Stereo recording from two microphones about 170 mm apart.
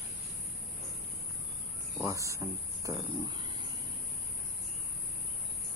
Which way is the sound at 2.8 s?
25° right (ahead or behind).